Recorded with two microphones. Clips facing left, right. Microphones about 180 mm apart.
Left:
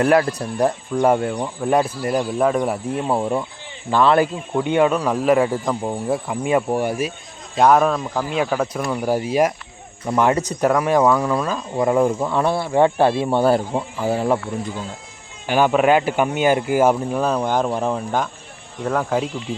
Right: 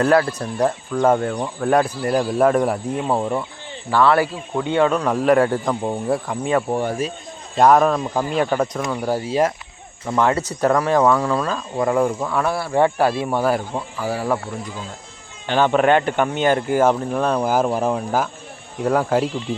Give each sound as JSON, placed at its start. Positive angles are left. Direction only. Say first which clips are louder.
{"t": 0.0, "sound": "speech", "louder": "even", "side_deg": 15}
{"t": 3.9, "sound": "speech", "louder": "left 1 dB", "side_deg": 20}
{"t": 7.5, "sound": "speech", "louder": "right 1 dB", "side_deg": 0}
{"t": 15.4, "sound": "speech", "louder": "even", "side_deg": 10}